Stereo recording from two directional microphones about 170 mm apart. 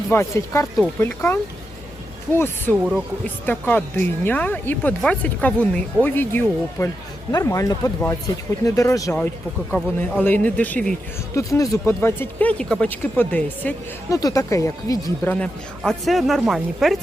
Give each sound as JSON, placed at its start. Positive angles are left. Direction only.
{"t": 0.1, "sound": "speech", "side_deg": 15}
{"t": 11.3, "sound": "speech", "side_deg": 20}
{"t": 15.8, "sound": "speech", "side_deg": 0}